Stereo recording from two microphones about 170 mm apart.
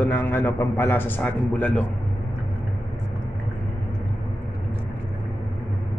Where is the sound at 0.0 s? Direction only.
10° left (ahead or behind).